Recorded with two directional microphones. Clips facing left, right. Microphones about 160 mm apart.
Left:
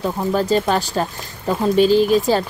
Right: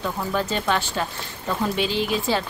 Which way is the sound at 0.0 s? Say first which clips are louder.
Left 6 dB; 35° left (ahead or behind).